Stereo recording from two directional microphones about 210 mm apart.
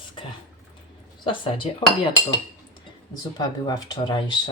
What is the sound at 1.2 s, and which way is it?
Speech, 25° left (ahead or behind).